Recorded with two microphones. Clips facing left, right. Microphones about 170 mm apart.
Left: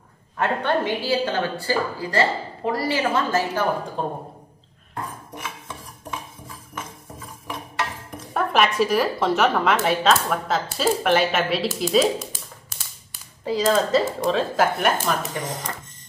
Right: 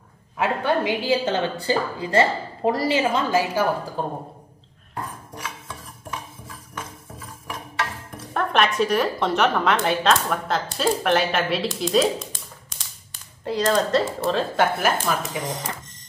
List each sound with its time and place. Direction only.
0.4 s a woman's voice: 5° right (ahead or behind)
1.0 s a woman's voice: 20° right (ahead or behind)
3.0 s a woman's voice: 15° right (ahead or behind)
8.3 s a woman's voice: 5° left (ahead or behind)